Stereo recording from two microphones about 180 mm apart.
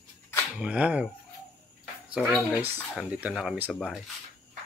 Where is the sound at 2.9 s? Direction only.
5° right (ahead or behind).